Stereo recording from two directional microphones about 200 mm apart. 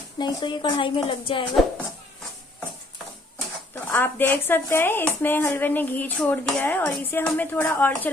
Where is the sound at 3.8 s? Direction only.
10° left (ahead or behind).